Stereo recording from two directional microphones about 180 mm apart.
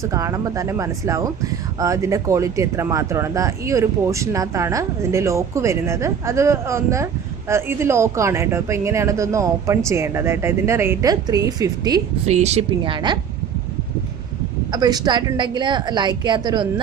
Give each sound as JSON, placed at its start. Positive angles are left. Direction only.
{"t": 0.0, "sound": "speech", "side_deg": -15}
{"t": 12.3, "sound": "a woman's voice", "side_deg": -35}
{"t": 14.7, "sound": "a woman's voice", "side_deg": -20}